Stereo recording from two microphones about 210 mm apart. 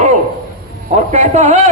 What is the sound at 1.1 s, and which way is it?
Speech, 30° right (ahead or behind).